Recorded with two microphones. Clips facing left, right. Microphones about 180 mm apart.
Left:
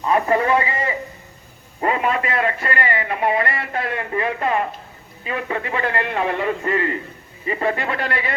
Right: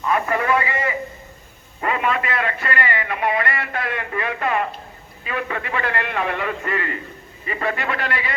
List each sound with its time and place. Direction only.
0.0 s a man's voice: 30° left (ahead or behind)